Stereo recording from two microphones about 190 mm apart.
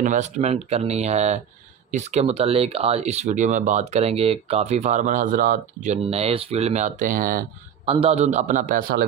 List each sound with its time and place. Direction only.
0.0 s speech: 40° right (ahead or behind)
7.8 s speech: 30° right (ahead or behind); by 9.0 s 50° right (ahead or behind)